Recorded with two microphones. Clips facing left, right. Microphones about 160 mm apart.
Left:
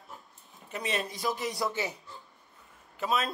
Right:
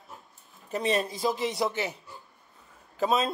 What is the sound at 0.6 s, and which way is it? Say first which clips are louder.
Speech: right 6 dB; 35° right (ahead or behind).